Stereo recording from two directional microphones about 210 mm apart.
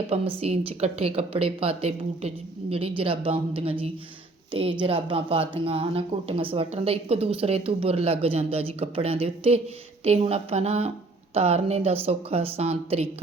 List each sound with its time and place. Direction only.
0.1 s speech: 30° right (ahead or behind)